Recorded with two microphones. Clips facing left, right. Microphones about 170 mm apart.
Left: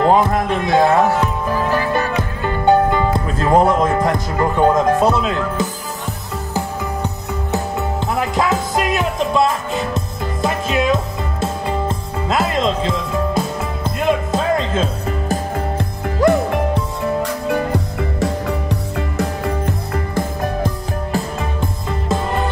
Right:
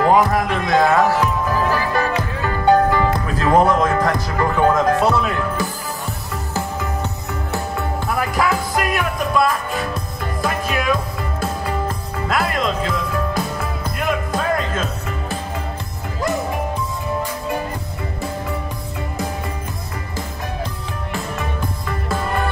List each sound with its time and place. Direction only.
0.0 s music: 25° left (ahead or behind)
2.6 s speech: 25° left (ahead or behind)
8.1 s music: 20° left (ahead or behind)
16.2 s music: 65° left (ahead or behind)
20.2 s music: 50° left (ahead or behind)
21.5 s music: 20° left (ahead or behind)